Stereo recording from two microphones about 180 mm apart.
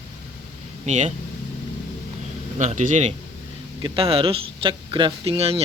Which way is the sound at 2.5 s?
45° right (ahead or behind).